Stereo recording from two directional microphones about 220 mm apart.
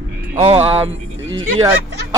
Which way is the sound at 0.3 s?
30° right (ahead or behind).